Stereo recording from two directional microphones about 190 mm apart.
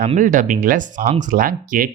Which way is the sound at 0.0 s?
40° right (ahead or behind).